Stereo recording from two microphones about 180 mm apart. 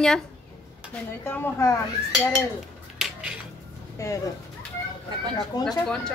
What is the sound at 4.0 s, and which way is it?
Speech, 15° left (ahead or behind).